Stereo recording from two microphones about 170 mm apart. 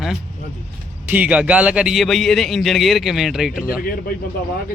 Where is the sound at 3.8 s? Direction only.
60° left (ahead or behind).